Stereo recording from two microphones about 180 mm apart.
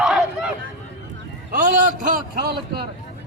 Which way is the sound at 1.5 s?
50° right (ahead or behind).